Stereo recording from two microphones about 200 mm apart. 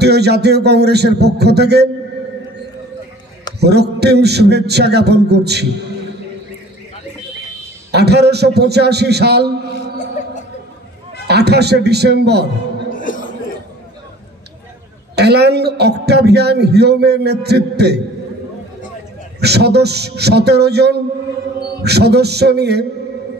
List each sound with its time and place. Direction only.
0.0 s a man's voice: 55° right (ahead or behind)
3.5 s a man's voice: 55° right (ahead or behind)
7.9 s a man's voice: 55° right (ahead or behind)
10.2 s chuckle: 40° left (ahead or behind)
11.2 s a man's voice: 55° right (ahead or behind)
12.9 s a sound: 40° left (ahead or behind)
15.1 s a man's voice: 55° right (ahead or behind)
19.4 s a man's voice: 55° right (ahead or behind)